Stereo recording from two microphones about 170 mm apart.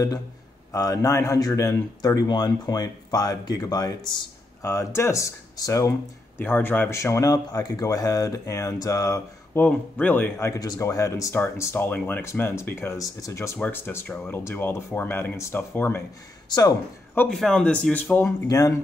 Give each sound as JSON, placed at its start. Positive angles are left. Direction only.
{"t": 0.7, "sound": "a man's voice", "side_deg": 20}
{"t": 16.4, "sound": "speech", "side_deg": 25}
{"t": 17.1, "sound": "speech", "side_deg": 5}